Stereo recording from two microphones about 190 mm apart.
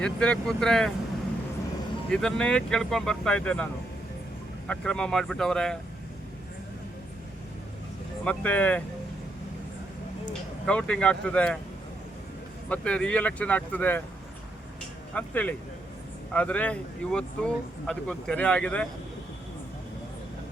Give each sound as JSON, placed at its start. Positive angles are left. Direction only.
{"t": 0.0, "sound": "speech", "side_deg": 5}
{"t": 2.0, "sound": "speech", "side_deg": 5}
{"t": 8.2, "sound": "speech", "side_deg": 5}
{"t": 10.7, "sound": "speech", "side_deg": 5}
{"t": 12.6, "sound": "speech", "side_deg": 5}
{"t": 15.1, "sound": "speech", "side_deg": 10}